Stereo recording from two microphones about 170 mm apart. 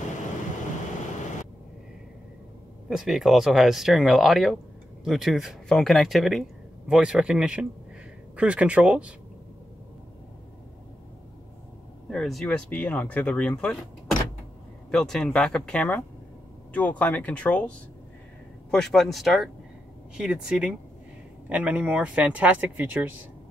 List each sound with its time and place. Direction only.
2.9 s speech: centre (ahead or behind)
12.1 s speech: centre (ahead or behind)
14.9 s speech: centre (ahead or behind)